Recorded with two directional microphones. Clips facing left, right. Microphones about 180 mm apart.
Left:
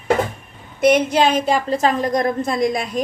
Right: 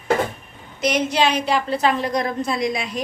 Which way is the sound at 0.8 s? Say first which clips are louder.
Left 5 dB; 55° left (ahead or behind).